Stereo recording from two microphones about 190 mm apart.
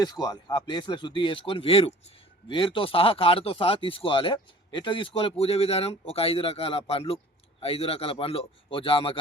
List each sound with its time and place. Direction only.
0.0 s speech: 20° left (ahead or behind)